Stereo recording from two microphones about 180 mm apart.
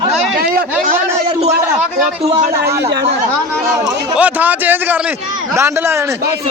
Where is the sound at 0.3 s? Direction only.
55° right (ahead or behind).